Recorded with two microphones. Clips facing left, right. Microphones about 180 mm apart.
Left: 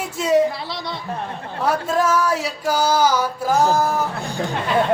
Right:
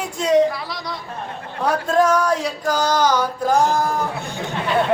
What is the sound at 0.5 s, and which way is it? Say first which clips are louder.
Speech: even; 25° left (ahead or behind).